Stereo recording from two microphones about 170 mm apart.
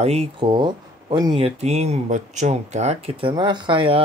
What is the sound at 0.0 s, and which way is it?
Speech, 35° right (ahead or behind).